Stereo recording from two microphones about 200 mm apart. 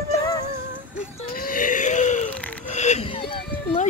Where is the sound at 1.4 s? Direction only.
40° left (ahead or behind).